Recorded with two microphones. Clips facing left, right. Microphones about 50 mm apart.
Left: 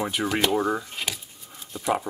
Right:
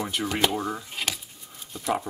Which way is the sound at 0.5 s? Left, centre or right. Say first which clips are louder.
Left 6 dB; left.